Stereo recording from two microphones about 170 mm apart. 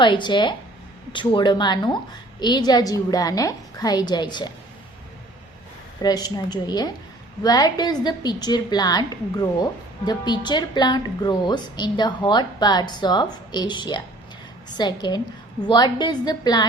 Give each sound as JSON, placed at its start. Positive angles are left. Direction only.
{"t": 0.0, "sound": "a woman's voice", "side_deg": 25}
{"t": 6.0, "sound": "a woman's voice", "side_deg": 25}